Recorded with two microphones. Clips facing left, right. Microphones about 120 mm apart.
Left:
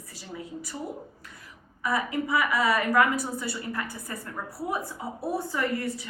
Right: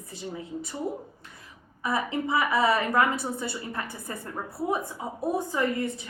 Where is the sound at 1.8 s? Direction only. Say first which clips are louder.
Even; 25° right (ahead or behind).